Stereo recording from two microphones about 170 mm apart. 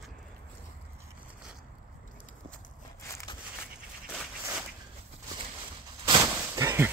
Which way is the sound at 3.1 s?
20° left (ahead or behind).